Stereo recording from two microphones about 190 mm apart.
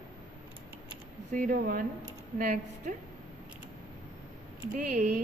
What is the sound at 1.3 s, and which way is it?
A woman's voice, 45° right (ahead or behind).